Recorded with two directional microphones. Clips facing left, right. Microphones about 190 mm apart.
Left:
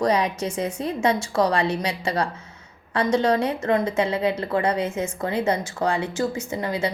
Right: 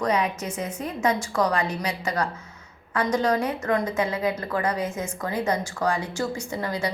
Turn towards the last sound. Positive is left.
turn(degrees=20)  # may be behind; listen again after turning